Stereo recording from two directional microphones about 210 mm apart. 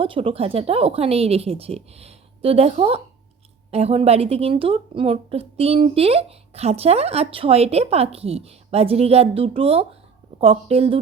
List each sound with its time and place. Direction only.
0.0 s speech: 25° right (ahead or behind)